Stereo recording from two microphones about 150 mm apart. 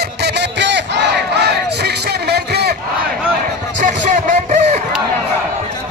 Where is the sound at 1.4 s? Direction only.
90° right.